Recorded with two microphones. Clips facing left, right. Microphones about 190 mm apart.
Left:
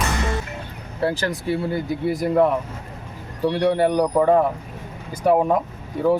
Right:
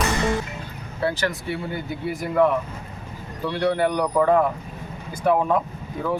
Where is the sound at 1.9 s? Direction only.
35° left (ahead or behind).